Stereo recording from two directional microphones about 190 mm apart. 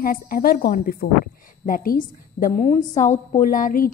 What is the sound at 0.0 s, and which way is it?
A woman's voice, 50° left (ahead or behind).